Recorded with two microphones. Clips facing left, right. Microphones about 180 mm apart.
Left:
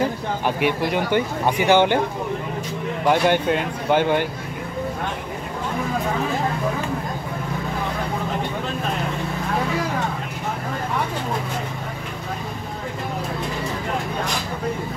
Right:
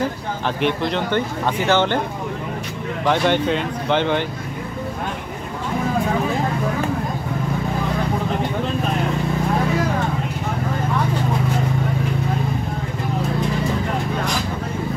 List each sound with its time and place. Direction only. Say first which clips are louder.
0.6 s speech: right 2 dB; 10° left (ahead or behind)
3.1 s speech: even; 10° left (ahead or behind)